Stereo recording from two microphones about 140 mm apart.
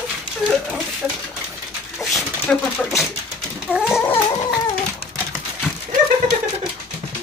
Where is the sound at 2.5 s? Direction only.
10° left (ahead or behind).